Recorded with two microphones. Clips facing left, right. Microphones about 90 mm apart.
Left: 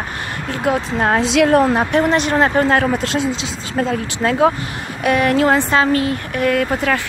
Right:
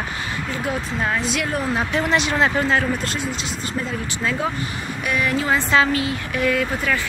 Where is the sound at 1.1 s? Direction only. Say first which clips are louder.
Left 11 dB; 90° left.